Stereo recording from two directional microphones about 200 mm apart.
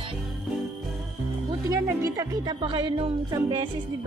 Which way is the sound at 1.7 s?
15° right (ahead or behind).